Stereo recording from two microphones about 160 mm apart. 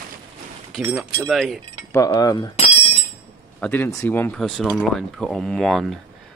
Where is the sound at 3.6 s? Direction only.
10° left (ahead or behind).